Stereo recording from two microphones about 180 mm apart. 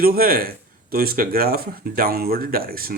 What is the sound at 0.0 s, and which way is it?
Speech, 55° right (ahead or behind).